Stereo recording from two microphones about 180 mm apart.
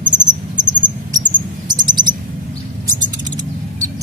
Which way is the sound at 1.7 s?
25° right (ahead or behind).